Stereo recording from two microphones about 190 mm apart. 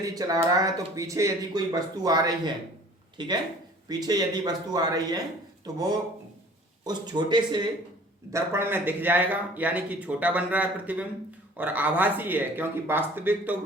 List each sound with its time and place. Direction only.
0.1 s speech: 20° right (ahead or behind)
8.3 s speech: 15° right (ahead or behind)